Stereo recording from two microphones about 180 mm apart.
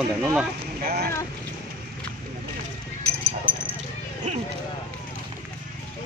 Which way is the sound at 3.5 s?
10° left (ahead or behind).